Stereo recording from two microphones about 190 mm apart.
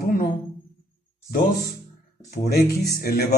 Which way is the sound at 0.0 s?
50° left (ahead or behind).